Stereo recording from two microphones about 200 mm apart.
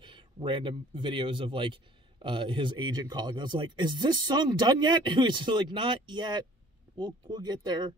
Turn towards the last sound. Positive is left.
turn(degrees=-20)  # may be behind; listen again after turning